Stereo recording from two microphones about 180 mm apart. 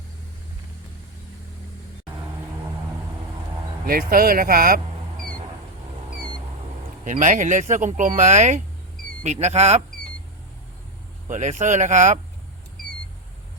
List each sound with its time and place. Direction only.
3.8 s speech: 55° right (ahead or behind)
7.0 s speech: 45° right (ahead or behind)
11.3 s speech: 40° right (ahead or behind)